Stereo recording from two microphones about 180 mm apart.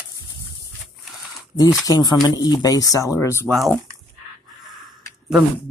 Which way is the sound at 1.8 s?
20° left (ahead or behind).